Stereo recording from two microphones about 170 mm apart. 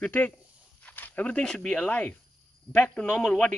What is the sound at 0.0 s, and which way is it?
A man's voice, 10° left (ahead or behind).